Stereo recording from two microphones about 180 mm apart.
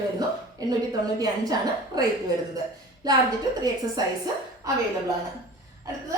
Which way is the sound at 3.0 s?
20° right (ahead or behind).